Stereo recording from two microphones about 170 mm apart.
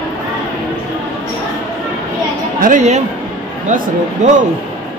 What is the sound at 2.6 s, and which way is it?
A man's voice, 45° right (ahead or behind).